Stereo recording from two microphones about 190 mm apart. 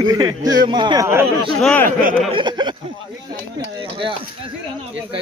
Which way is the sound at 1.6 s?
5° left (ahead or behind).